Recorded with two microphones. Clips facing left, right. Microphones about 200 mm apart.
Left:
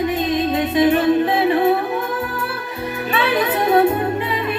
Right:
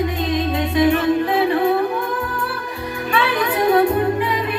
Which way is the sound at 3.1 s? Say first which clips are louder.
Left 1 dB; 20° left (ahead or behind).